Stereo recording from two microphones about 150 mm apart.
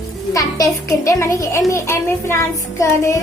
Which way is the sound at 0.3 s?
25° left (ahead or behind).